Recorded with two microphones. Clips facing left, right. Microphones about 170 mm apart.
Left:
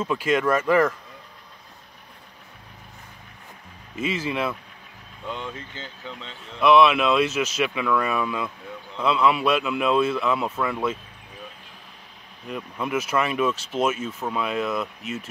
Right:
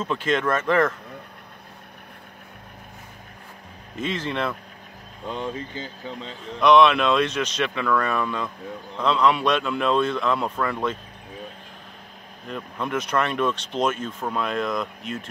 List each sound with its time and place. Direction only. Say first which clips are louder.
0.0 s speech: left 1 dB; 10° left (ahead or behind)
3.9 s speech: left 1 dB; 5° left (ahead or behind)
5.2 s speech: right 4 dB; 35° right (ahead or behind)
6.6 s speech: right 1 dB; 5° left (ahead or behind)
12.4 s speech: even; 5° left (ahead or behind)